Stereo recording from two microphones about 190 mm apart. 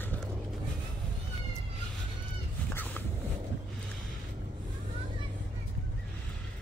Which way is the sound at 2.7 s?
10° left (ahead or behind).